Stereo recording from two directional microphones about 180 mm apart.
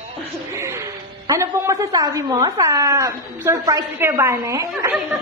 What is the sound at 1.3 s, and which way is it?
Speech, 15° right (ahead or behind).